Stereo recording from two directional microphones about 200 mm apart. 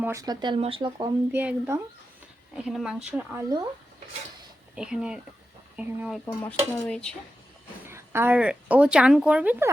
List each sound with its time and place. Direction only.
0.0 s speech: 15° right (ahead or behind)
1.3 s speech: 10° right (ahead or behind)
4.7 s speech: 5° right (ahead or behind)
6.2 s speech: 10° left (ahead or behind)
7.9 s a woman's voice: 10° right (ahead or behind)